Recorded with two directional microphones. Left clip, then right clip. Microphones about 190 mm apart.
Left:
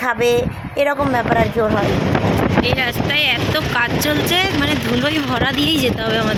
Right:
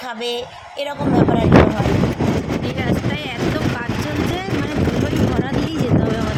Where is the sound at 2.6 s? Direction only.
5° left (ahead or behind).